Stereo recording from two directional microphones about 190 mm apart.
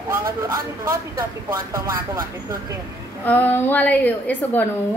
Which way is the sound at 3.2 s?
10° left (ahead or behind).